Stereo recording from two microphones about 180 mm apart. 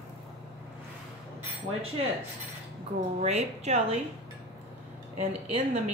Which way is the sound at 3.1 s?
40° right (ahead or behind).